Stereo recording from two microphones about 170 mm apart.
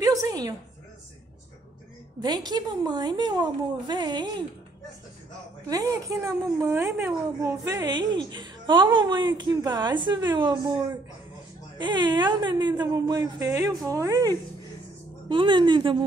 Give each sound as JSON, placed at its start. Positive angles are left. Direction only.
{"t": 0.0, "sound": "a sound", "side_deg": -20}
{"t": 2.2, "sound": "a woman's voice", "side_deg": -25}
{"t": 5.7, "sound": "a woman's voice", "side_deg": -20}
{"t": 7.6, "sound": "a woman's voice", "side_deg": -25}
{"t": 11.8, "sound": "a woman's voice", "side_deg": -25}